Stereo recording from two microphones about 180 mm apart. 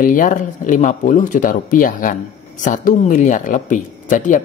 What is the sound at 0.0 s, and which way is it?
Speech, 45° left (ahead or behind).